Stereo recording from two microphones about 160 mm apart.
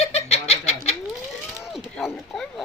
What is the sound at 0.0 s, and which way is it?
Fowl, 40° left (ahead or behind).